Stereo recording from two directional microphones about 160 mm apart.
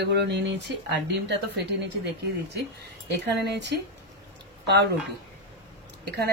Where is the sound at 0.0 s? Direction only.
90° right.